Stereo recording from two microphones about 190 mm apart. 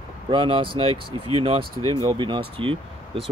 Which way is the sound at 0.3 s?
25° right (ahead or behind).